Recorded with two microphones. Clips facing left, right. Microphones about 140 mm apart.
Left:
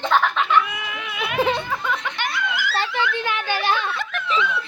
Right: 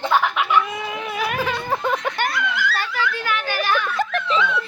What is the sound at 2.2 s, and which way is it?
Giggle, centre (ahead or behind).